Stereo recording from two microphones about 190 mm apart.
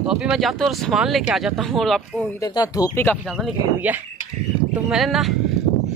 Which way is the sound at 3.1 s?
5° right (ahead or behind).